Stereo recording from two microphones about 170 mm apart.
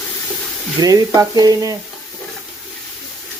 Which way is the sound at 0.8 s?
20° right (ahead or behind).